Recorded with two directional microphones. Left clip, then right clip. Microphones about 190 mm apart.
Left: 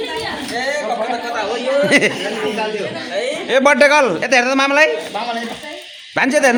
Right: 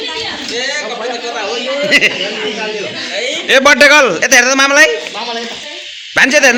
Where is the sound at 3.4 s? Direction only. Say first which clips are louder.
Right 5 dB; 5° left (ahead or behind).